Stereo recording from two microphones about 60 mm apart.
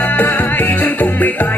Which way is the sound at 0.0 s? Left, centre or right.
Left.